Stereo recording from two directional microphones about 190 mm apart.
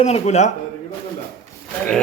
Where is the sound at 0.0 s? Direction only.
35° left (ahead or behind).